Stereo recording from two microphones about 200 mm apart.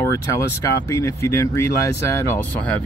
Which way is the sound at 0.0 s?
15° left (ahead or behind).